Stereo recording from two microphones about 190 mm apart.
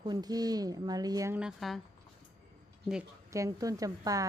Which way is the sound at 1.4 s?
Centre (ahead or behind).